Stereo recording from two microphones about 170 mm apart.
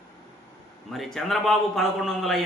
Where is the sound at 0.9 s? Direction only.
Centre (ahead or behind).